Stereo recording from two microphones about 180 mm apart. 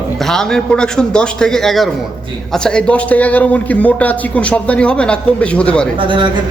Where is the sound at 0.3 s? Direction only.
5° left (ahead or behind).